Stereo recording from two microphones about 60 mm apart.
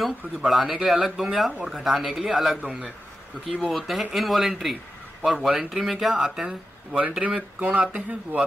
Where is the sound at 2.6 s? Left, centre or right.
Centre.